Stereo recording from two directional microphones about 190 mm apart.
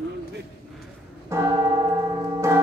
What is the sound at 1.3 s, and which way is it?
Church bell, 20° right (ahead or behind).